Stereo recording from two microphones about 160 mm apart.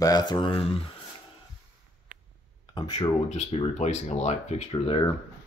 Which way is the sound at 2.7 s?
25° left (ahead or behind).